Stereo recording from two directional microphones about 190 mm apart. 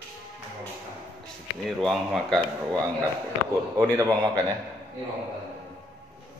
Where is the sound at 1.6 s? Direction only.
Centre (ahead or behind).